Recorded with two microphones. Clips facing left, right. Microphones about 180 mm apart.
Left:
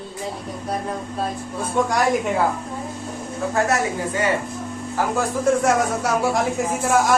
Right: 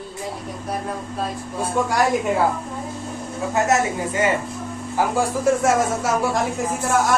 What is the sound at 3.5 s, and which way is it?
Speech, 20° right (ahead or behind).